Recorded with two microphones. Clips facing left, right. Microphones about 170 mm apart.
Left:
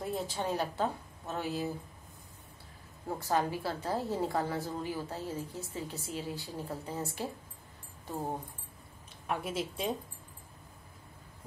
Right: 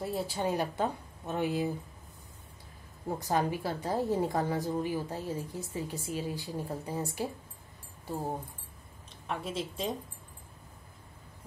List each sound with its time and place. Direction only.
0.0 s a woman's voice: 5° right (ahead or behind)
3.2 s a woman's voice: 15° right (ahead or behind)
9.3 s speech: 5° left (ahead or behind)